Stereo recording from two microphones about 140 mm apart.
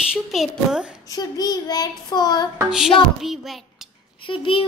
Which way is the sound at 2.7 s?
5° right (ahead or behind).